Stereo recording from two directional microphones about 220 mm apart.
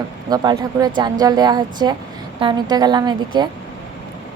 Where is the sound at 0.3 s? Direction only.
15° right (ahead or behind).